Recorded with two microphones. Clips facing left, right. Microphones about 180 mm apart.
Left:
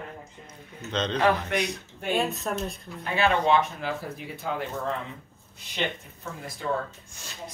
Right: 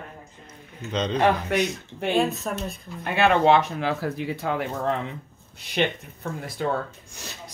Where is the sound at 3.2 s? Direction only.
85° right.